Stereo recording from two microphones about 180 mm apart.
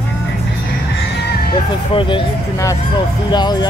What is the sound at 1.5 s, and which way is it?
Speech, 30° left (ahead or behind).